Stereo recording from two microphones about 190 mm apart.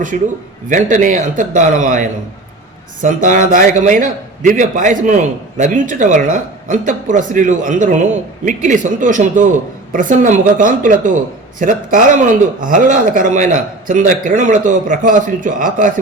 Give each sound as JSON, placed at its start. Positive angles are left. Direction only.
{"t": 0.1, "sound": "a man's voice", "side_deg": -40}